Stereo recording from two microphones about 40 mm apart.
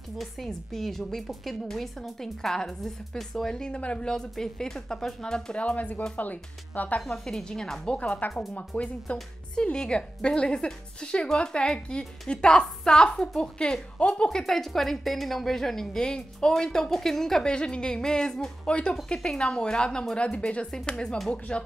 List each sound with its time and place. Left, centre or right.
0.5 s a woman's voice: centre
3.5 s speech: centre
4.1 s a woman's voice: centre
5.8 s speech: left
7.1 s a woman's voice: centre
8.5 s speech: left
9.6 s speech: left
14.4 s a woman's voice: centre
17.4 s speech: left
18.7 s speech: left